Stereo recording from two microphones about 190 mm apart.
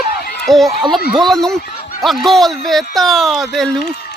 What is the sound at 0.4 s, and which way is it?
Speech, centre (ahead or behind).